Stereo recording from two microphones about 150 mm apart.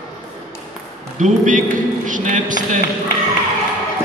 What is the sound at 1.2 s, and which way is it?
Speech, 55° right (ahead or behind).